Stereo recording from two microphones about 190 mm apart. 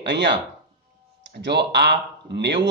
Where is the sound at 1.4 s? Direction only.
65° right (ahead or behind).